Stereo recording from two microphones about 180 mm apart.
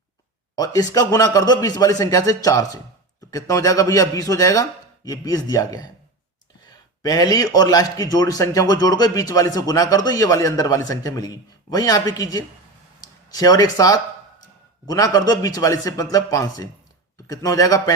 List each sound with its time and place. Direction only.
0.5 s a man's voice: 20° left (ahead or behind)
7.0 s a man's voice: 20° left (ahead or behind)